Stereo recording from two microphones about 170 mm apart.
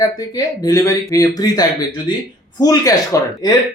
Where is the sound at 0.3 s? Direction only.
20° left (ahead or behind).